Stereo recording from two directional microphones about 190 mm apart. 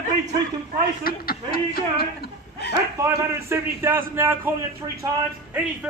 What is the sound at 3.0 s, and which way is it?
A man's voice, 15° right (ahead or behind).